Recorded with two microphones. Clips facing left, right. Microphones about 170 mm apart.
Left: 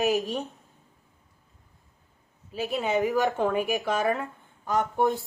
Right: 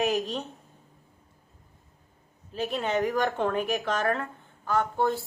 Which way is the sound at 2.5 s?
5° left (ahead or behind).